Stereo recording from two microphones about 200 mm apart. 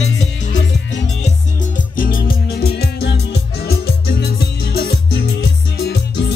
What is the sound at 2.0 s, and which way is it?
Music, 45° left (ahead or behind).